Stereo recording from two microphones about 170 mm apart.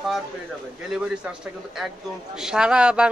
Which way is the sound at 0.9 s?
Centre (ahead or behind).